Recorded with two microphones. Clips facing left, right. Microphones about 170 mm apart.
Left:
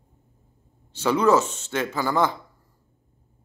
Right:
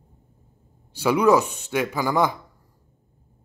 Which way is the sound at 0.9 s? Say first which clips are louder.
Right 1 dB; 10° right (ahead or behind).